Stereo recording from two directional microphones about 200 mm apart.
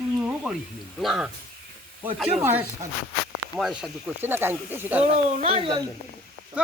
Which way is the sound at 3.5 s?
Centre (ahead or behind).